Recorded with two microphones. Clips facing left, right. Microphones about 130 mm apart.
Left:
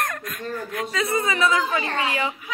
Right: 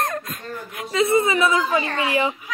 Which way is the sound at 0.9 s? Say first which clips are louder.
Right 7 dB; 25° right (ahead or behind).